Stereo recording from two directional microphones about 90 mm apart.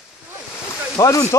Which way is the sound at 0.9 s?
35° left (ahead or behind).